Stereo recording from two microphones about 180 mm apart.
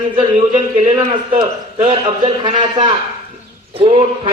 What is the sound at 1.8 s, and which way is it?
Speech, 40° right (ahead or behind).